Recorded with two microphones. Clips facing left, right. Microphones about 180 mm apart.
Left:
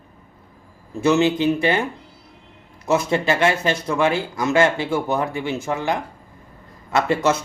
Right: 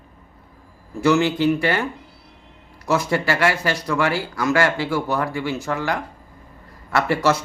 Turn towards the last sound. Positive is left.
turn(degrees=20)  # may be behind; listen again after turning